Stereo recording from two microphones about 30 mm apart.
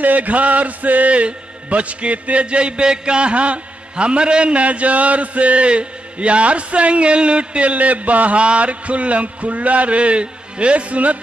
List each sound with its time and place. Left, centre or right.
0.0 s a sound: right
1.1 s a man's voice: right
4.6 s mantra: right
8.4 s mantra: right